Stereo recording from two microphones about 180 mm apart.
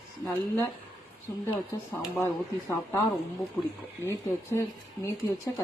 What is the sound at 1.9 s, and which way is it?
Speech, 15° left (ahead or behind).